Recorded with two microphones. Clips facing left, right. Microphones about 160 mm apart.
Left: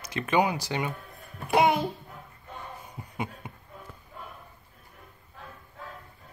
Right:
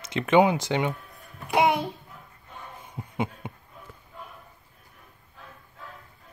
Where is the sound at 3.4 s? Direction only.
25° right (ahead or behind).